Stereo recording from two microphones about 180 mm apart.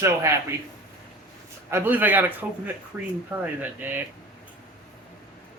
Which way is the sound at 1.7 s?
10° right (ahead or behind).